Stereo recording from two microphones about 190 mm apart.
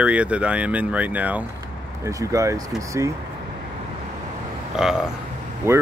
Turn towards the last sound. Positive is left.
turn(degrees=-15)  # may be behind; listen again after turning